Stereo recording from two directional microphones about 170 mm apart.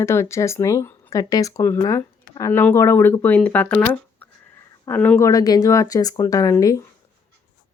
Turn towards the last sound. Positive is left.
turn(degrees=20)  # may be behind; listen again after turning